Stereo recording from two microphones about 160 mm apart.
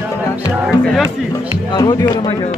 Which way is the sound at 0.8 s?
Centre (ahead or behind).